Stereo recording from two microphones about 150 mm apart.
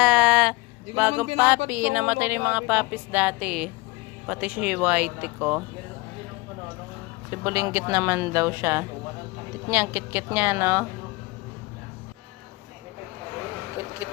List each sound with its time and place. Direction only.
0.0 s a sound: 5° right (ahead or behind)
0.9 s speech: 10° right (ahead or behind)
7.3 s speech: 15° right (ahead or behind)